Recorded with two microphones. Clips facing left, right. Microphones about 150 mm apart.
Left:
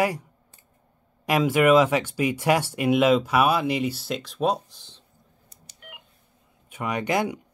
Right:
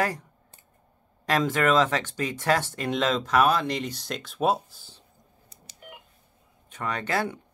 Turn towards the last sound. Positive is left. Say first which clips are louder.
# left 3 dB
turn(degrees=15)  # may be behind; listen again after turning